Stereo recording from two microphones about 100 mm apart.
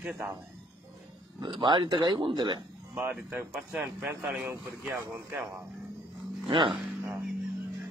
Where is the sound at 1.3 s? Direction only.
50° right (ahead or behind).